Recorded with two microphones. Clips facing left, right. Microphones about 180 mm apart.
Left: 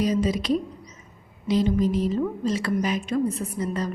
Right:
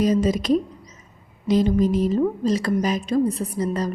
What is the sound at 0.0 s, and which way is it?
A woman's voice, 45° right (ahead or behind).